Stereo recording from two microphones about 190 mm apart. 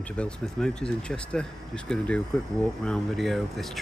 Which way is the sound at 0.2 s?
5° left (ahead or behind).